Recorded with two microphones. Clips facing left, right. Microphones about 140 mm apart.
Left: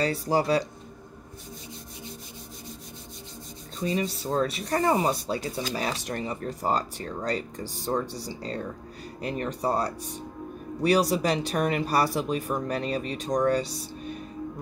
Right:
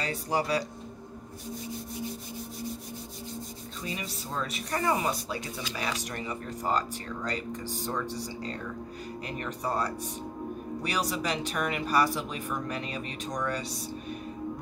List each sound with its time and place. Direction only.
0.0 s speech: 30° left (ahead or behind)
3.8 s speech: 30° left (ahead or behind)